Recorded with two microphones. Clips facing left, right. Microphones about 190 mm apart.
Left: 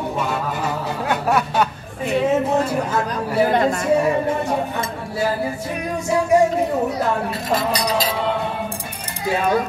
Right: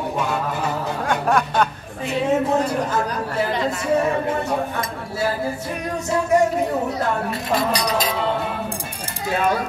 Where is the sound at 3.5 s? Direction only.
50° left (ahead or behind).